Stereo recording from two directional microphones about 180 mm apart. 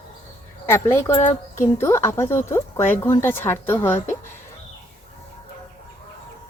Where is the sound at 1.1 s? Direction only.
25° left (ahead or behind).